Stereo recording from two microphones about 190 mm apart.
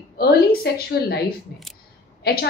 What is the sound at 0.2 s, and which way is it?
A woman's voice, 55° left (ahead or behind).